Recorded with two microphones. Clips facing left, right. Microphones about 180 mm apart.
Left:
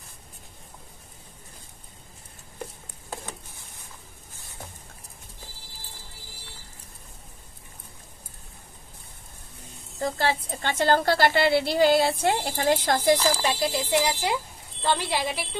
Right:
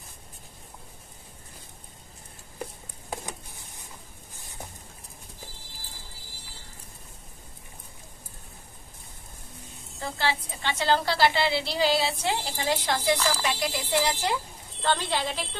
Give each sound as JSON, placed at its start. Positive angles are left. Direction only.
{"t": 9.9, "sound": "a woman's voice", "side_deg": 40}
{"t": 13.4, "sound": "a woman's voice", "side_deg": 25}